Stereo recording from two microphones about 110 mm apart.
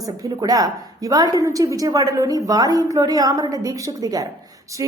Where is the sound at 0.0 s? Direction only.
35° right (ahead or behind).